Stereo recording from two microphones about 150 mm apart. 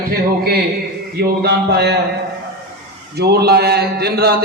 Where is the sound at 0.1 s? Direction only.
90° right.